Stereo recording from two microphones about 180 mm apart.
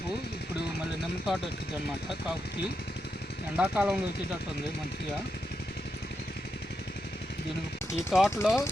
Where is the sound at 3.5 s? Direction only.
5° right (ahead or behind).